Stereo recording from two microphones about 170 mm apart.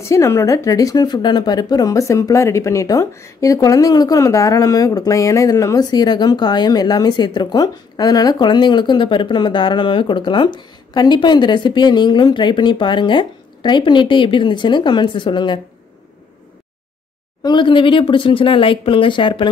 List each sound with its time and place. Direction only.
0.0 s speech: 15° left (ahead or behind)
17.4 s speech: 25° left (ahead or behind)